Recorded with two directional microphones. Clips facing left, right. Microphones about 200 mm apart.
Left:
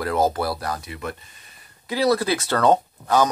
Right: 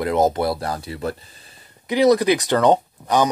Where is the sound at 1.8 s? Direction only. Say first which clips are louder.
Right 5 dB; 20° right (ahead or behind).